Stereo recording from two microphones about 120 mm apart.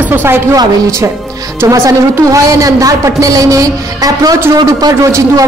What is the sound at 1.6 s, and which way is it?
A man's voice, 25° right (ahead or behind).